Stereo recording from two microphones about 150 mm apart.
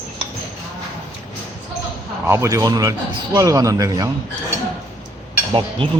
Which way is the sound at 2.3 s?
20° right (ahead or behind).